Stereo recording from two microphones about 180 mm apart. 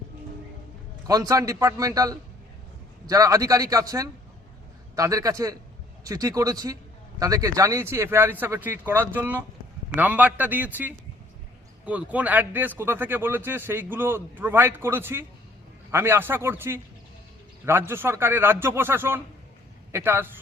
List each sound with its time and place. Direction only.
1.0 s a man's voice: 20° right (ahead or behind)